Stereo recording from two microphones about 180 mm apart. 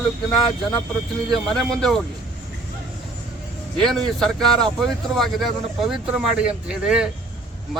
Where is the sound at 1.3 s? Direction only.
Centre (ahead or behind).